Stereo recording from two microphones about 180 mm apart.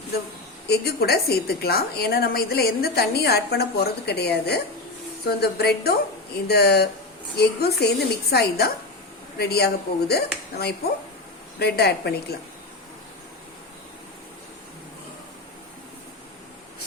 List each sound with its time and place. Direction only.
0.7 s a woman's voice: 60° left (ahead or behind)